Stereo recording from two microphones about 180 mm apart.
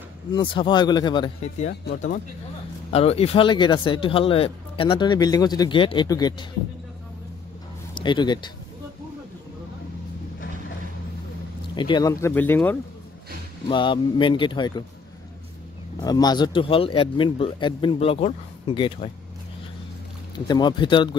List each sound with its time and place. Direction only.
0.3 s speech: 25° left (ahead or behind)
2.9 s speech: 35° left (ahead or behind)
7.9 s speech: 25° left (ahead or behind)
11.7 s speech: 25° left (ahead or behind); by 12.7 s 10° left (ahead or behind)
13.7 s speech: 25° left (ahead or behind)
16.0 s speech: 20° left (ahead or behind)
20.3 s speech: 25° left (ahead or behind)